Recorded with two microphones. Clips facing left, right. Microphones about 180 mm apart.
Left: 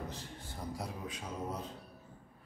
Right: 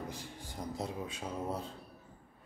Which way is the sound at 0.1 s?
10° right (ahead or behind).